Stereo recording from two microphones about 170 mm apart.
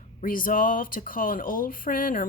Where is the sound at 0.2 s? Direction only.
55° left (ahead or behind).